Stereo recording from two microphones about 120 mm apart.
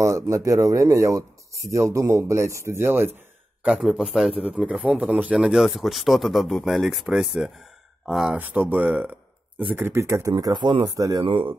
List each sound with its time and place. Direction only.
0.0 s speech: 25° right (ahead or behind)
3.6 s a man's voice: 5° right (ahead or behind)
8.4 s speech: 15° right (ahead or behind)
10.3 s speech: 40° right (ahead or behind)
11.2 s speech: 45° right (ahead or behind)